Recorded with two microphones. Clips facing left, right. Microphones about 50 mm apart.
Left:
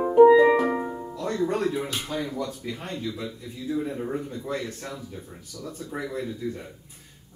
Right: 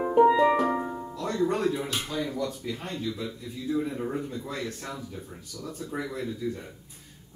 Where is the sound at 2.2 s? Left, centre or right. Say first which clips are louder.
Even; centre.